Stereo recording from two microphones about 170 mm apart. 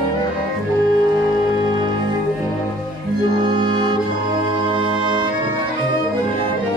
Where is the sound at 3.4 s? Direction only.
25° right (ahead or behind).